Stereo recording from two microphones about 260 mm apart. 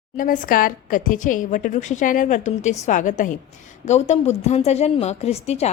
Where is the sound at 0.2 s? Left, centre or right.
Left.